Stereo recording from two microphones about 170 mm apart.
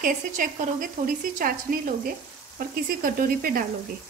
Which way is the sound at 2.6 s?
55° right (ahead or behind).